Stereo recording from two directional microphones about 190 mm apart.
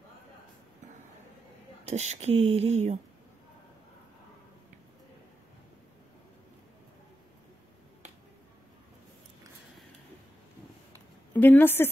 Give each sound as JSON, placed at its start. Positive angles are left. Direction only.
{"t": 1.9, "sound": "speech", "side_deg": -35}
{"t": 11.3, "sound": "speech", "side_deg": 10}